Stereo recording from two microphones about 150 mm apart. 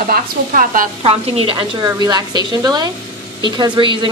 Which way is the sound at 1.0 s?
40° right (ahead or behind).